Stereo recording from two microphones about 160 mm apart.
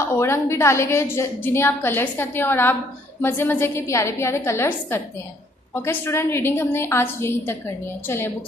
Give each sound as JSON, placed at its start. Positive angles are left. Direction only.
{"t": 0.1, "sound": "a woman's voice", "side_deg": 15}